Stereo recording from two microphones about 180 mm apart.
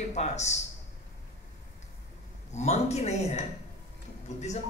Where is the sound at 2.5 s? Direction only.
40° left (ahead or behind).